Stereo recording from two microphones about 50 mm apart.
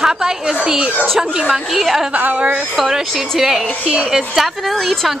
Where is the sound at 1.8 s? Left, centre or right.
Centre.